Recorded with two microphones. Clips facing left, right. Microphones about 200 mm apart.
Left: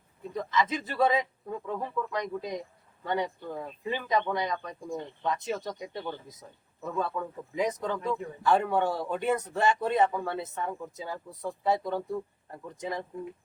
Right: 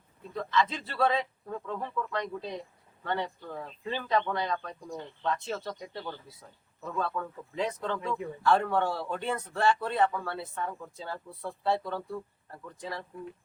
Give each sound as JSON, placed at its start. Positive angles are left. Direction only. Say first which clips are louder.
{"t": 0.3, "sound": "speech", "louder": "even", "side_deg": 15}